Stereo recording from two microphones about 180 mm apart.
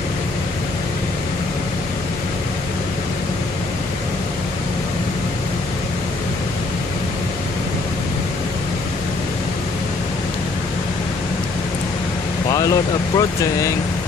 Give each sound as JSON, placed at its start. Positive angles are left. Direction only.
{"t": 12.4, "sound": "vehicle", "side_deg": 20}
{"t": 13.4, "sound": "speech", "side_deg": 15}